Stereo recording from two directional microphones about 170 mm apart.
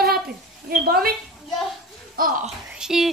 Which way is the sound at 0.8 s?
65° right (ahead or behind).